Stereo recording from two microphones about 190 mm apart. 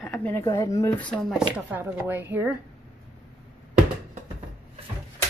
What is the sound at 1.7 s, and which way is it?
Speech, 10° right (ahead or behind).